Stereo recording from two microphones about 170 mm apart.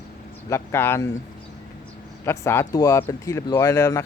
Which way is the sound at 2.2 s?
15° left (ahead or behind).